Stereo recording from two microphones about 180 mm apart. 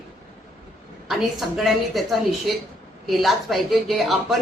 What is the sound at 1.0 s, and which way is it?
A woman's voice, centre (ahead or behind).